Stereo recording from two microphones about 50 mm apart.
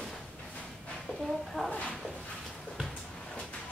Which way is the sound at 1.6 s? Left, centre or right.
Centre.